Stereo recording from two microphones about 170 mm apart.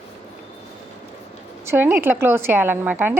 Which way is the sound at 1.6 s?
10° right (ahead or behind).